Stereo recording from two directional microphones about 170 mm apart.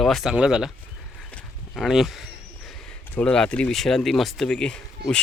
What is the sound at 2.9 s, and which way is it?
Speech, 5° left (ahead or behind).